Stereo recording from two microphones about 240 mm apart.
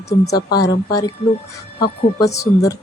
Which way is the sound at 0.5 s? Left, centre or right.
Centre.